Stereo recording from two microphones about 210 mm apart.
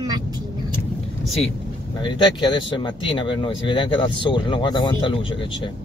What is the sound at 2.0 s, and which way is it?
Speech, 20° left (ahead or behind).